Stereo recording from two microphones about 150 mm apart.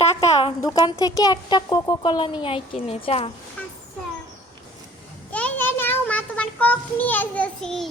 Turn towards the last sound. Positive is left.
turn(degrees=5)  # may be behind; listen again after turning